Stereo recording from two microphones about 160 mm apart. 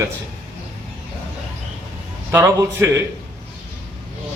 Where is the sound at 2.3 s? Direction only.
15° right (ahead or behind).